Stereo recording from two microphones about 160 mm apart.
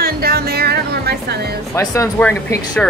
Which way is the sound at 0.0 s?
70° right (ahead or behind).